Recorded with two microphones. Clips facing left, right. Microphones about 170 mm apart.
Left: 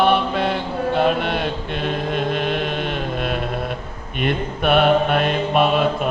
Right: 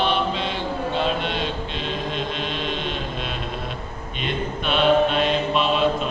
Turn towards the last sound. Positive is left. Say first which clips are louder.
# left 3 dB
turn(degrees=55)  # may be behind; listen again after turning